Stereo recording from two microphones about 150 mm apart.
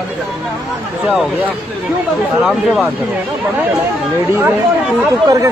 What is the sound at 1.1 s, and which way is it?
Speech, 5° right (ahead or behind).